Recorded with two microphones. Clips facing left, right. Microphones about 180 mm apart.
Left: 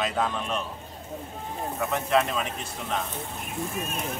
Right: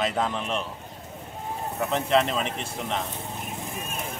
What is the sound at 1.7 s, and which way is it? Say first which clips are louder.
A man's voice: right 2 dB; 25° right (ahead or behind).